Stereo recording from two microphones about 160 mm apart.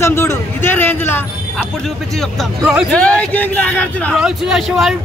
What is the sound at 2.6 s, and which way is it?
Speech, 5° right (ahead or behind).